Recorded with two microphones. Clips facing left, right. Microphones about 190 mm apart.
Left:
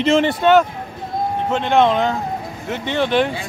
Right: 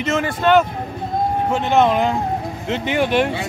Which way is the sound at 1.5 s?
5° right (ahead or behind).